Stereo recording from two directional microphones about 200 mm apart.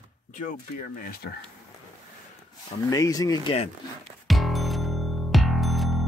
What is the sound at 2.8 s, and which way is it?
Speech, 15° left (ahead or behind).